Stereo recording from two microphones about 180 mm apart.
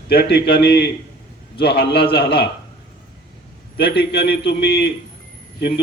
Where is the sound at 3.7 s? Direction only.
60° left (ahead or behind).